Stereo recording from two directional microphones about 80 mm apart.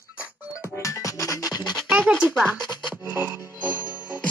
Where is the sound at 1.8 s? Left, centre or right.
Centre.